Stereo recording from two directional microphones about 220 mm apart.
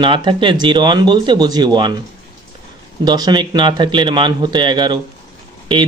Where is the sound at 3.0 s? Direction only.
20° right (ahead or behind).